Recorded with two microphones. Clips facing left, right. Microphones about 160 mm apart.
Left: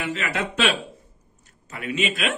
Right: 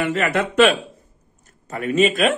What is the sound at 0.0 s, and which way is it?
Speech, 55° right (ahead or behind).